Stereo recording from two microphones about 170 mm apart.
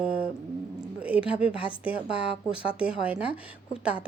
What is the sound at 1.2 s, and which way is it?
Speech, 5° right (ahead or behind).